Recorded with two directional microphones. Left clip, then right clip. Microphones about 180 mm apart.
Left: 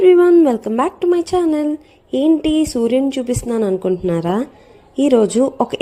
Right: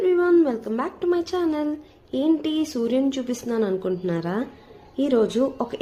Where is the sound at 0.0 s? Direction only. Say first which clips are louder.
Left 10 dB; 35° left (ahead or behind).